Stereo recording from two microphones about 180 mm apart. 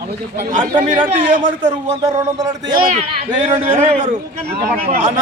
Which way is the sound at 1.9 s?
20° right (ahead or behind).